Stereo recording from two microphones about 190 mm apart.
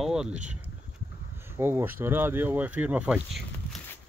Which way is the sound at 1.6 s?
10° right (ahead or behind).